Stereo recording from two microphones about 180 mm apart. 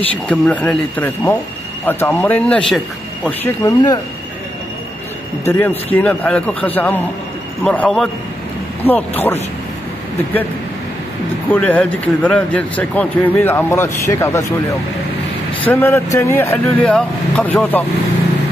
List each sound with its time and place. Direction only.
0.3 s speech: 10° left (ahead or behind)
3.3 s speech: 20° left (ahead or behind)
5.4 s speech: 15° left (ahead or behind)
11.5 s speech: 10° left (ahead or behind)
15.6 s speech: 10° left (ahead or behind)